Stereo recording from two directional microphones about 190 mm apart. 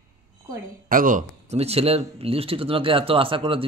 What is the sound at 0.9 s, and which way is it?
Speech, 45° right (ahead or behind).